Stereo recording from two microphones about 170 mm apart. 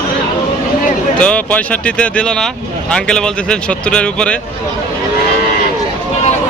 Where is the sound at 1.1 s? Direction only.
5° left (ahead or behind).